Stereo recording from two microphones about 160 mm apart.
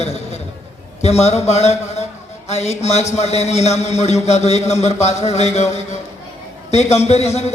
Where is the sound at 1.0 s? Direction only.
40° left (ahead or behind).